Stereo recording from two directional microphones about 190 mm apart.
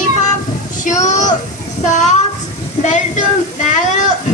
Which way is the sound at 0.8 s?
40° left (ahead or behind).